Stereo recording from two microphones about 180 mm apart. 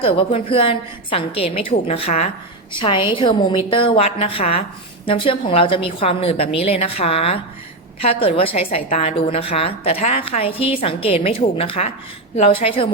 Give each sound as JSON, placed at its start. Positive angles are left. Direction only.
{"t": 0.0, "sound": "a woman's voice", "side_deg": 30}